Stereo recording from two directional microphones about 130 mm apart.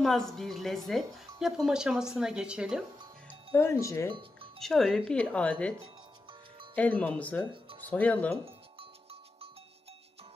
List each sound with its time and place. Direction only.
0.0 s speech: centre (ahead or behind)
3.5 s speech: 20° left (ahead or behind)
4.6 s speech: 5° left (ahead or behind)